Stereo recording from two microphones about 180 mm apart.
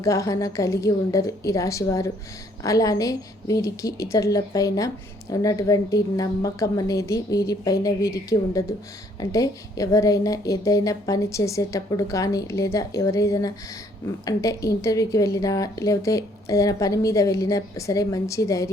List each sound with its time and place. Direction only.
0.0 s a woman's voice: 20° left (ahead or behind)
9.3 s a woman's voice: 20° left (ahead or behind)